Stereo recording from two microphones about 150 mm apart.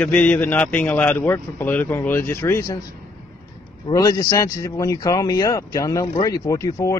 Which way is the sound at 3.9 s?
25° left (ahead or behind).